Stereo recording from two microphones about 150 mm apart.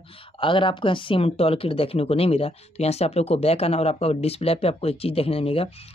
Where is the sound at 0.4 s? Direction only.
35° left (ahead or behind).